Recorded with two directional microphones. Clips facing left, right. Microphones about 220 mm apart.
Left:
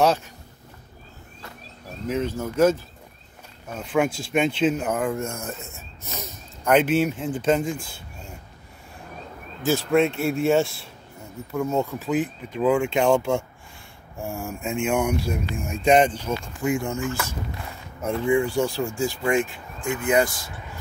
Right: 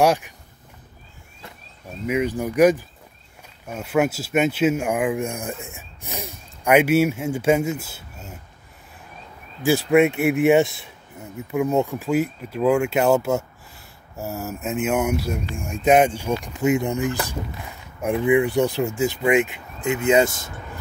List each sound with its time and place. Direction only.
0.0 s a sound: 15° right (ahead or behind)
2.0 s speech: 15° right (ahead or behind)
9.6 s speech: 10° right (ahead or behind)
16.2 s speech: 15° right (ahead or behind)